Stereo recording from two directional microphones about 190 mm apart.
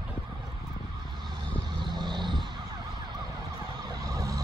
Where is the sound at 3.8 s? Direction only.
20° right (ahead or behind).